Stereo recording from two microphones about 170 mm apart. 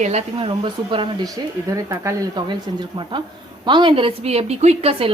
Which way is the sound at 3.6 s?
25° right (ahead or behind).